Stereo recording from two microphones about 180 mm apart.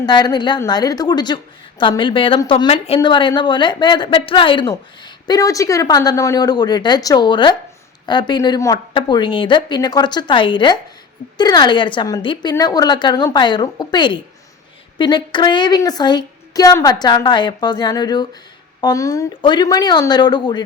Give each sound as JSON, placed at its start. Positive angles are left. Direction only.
{"t": 0.0, "sound": "a woman's voice", "side_deg": 25}